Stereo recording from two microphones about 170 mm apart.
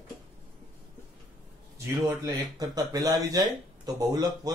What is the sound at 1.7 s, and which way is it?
Speech, 20° right (ahead or behind).